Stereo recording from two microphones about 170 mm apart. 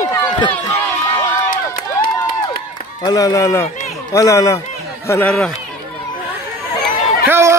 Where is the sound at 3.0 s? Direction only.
20° left (ahead or behind).